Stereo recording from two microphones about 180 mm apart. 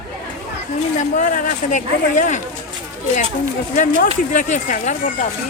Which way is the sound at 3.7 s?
45° left (ahead or behind).